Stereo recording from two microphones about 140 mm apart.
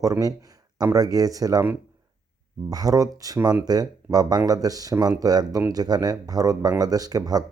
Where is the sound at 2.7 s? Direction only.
25° right (ahead or behind).